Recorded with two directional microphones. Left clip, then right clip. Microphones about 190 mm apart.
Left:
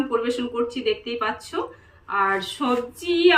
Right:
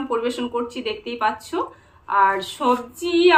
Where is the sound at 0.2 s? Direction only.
50° right (ahead or behind).